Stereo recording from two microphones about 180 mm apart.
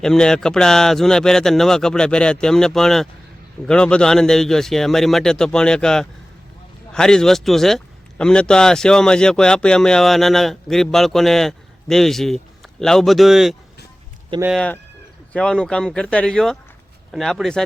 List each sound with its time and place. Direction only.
0.0 s speech: 5° left (ahead or behind)
14.3 s speech: 25° right (ahead or behind)
15.3 s speech: 5° left (ahead or behind)